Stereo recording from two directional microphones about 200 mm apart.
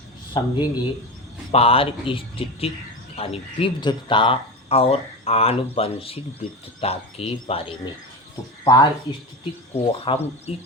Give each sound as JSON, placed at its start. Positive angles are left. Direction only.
{"t": 0.3, "sound": "speech", "side_deg": 20}